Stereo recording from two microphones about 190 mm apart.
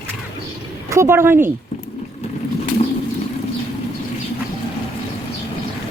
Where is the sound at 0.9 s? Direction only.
15° right (ahead or behind).